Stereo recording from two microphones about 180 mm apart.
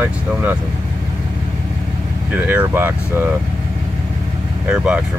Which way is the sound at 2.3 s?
10° right (ahead or behind).